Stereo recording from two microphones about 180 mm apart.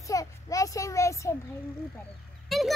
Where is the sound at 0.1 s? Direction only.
20° left (ahead or behind).